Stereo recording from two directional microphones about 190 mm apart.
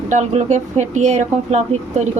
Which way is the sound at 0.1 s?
40° right (ahead or behind).